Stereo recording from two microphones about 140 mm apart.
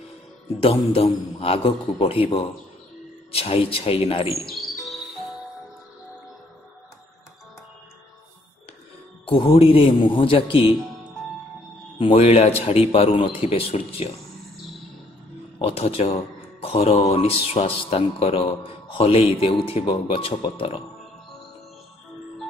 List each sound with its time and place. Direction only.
0.6 s speech: 45° left (ahead or behind)
4.3 s music: centre (ahead or behind)
9.2 s a man's voice: 40° left (ahead or behind)
12.0 s speech: 45° left (ahead or behind)
15.6 s speech: 45° left (ahead or behind)